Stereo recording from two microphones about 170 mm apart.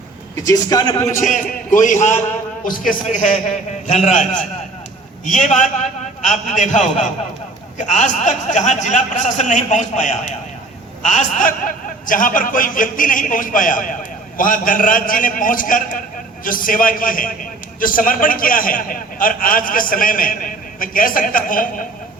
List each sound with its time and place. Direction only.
0.4 s a man's voice: 20° left (ahead or behind)
1.0 s a man's voice: 50° left (ahead or behind)